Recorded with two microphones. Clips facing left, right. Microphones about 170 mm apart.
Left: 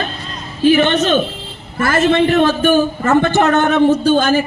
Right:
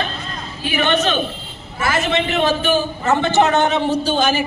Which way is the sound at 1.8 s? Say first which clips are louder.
Left 6 dB; 55° left (ahead or behind).